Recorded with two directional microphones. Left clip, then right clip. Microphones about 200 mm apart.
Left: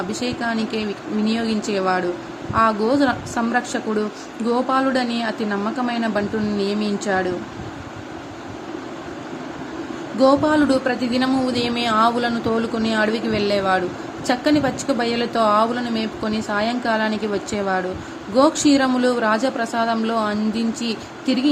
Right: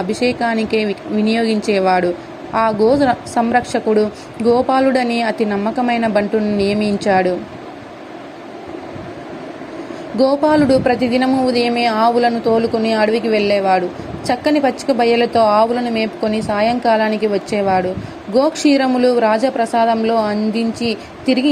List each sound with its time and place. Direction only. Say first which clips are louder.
0.1 s a woman's voice: right 7 dB; 15° right (ahead or behind)
10.2 s speech: right 3 dB; 15° right (ahead or behind)